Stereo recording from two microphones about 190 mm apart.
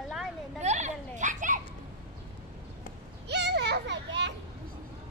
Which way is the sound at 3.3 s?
65° right (ahead or behind).